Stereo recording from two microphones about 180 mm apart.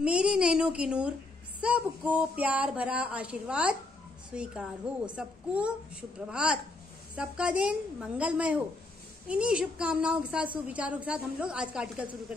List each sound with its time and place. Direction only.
0.0 s a woman's voice: 5° right (ahead or behind)